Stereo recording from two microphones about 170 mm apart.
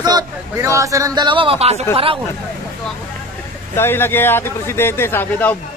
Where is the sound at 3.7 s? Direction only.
15° left (ahead or behind).